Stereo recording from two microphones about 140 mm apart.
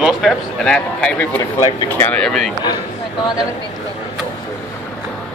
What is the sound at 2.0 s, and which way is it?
Speech, 5° left (ahead or behind).